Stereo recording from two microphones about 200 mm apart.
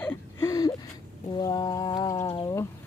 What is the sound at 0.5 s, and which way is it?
Speech, 20° left (ahead or behind).